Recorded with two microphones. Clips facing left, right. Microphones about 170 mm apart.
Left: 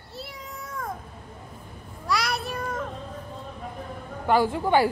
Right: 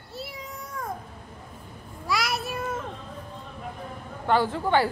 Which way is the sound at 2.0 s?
Centre (ahead or behind).